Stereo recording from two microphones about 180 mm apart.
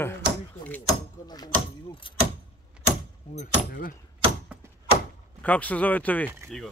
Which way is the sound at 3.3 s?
50° left (ahead or behind).